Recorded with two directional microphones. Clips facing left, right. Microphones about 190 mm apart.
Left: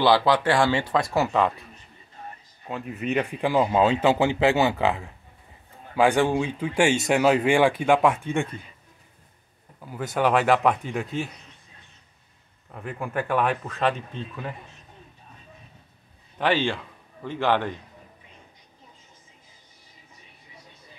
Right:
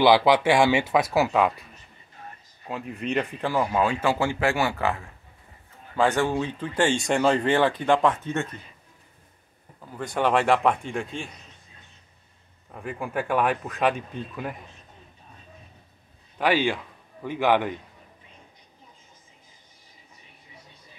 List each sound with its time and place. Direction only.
0.0 s speech: 15° right (ahead or behind)
2.7 s speech: centre (ahead or behind)
9.8 s speech: 5° left (ahead or behind)
12.7 s speech: centre (ahead or behind)
13.7 s speech: 15° right (ahead or behind)
16.3 s a man's voice: 10° right (ahead or behind)